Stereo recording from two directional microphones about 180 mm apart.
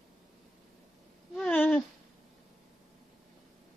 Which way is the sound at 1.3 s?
10° left (ahead or behind).